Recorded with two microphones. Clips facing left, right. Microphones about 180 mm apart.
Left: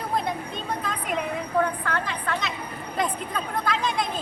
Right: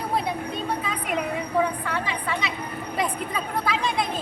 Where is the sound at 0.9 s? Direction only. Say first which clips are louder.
Right 1 dB; 5° right (ahead or behind).